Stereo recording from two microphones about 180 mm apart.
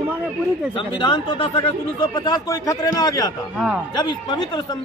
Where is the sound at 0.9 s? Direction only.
25° left (ahead or behind).